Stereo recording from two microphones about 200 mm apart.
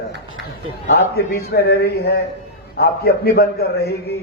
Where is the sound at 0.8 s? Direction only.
55° left (ahead or behind).